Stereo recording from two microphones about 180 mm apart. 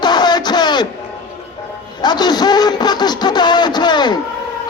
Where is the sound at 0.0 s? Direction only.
25° left (ahead or behind).